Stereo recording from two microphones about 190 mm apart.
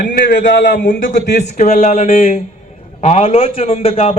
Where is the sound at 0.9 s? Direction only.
40° left (ahead or behind).